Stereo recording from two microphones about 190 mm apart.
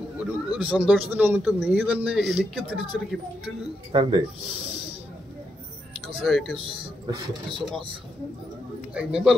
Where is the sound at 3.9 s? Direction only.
25° right (ahead or behind).